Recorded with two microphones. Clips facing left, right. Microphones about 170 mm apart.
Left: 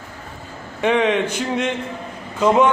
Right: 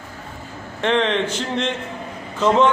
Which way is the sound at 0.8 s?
10° left (ahead or behind).